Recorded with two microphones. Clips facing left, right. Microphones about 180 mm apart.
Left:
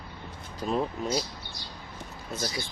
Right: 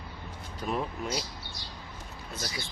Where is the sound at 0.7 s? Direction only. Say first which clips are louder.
Left 4 dB; 30° left (ahead or behind).